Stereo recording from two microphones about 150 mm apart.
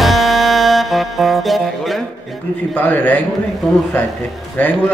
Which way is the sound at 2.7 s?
10° left (ahead or behind).